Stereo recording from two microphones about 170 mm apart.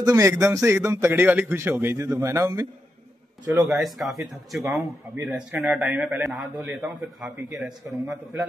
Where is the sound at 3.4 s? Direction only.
Centre (ahead or behind).